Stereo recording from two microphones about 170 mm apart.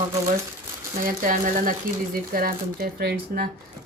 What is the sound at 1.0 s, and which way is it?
Speech, 50° right (ahead or behind).